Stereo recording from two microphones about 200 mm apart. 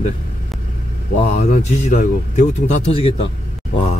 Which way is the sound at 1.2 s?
35° left (ahead or behind).